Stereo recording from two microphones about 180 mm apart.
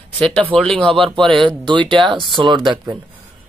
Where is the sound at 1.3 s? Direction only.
25° right (ahead or behind).